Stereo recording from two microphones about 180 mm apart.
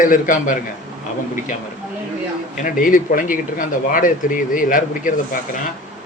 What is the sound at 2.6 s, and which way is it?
Speech, 50° left (ahead or behind).